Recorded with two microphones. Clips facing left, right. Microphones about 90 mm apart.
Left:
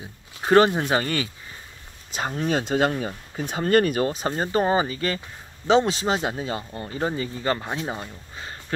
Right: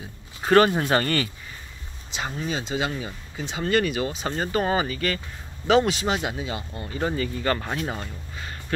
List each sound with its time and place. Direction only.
0.4 s speech: 15° left (ahead or behind)
2.1 s speech: 40° left (ahead or behind)
2.4 s speech: 55° left (ahead or behind)
4.4 s speech: 30° left (ahead or behind)
7.1 s speech: 20° left (ahead or behind)